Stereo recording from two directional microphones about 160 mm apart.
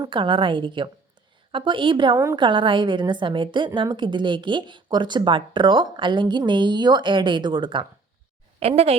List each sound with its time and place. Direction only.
0.1 s a woman's voice: 30° right (ahead or behind)
8.5 s a woman's voice: 40° right (ahead or behind)